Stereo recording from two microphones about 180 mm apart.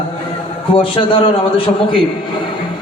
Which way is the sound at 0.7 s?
30° left (ahead or behind).